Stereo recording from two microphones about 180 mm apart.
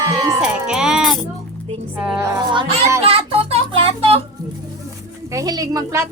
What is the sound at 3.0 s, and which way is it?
Music, 35° right (ahead or behind).